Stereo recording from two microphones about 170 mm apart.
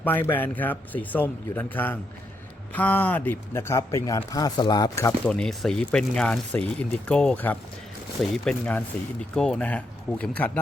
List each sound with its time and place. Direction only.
0.0 s speech: 10° left (ahead or behind)
5.3 s speech: 5° left (ahead or behind)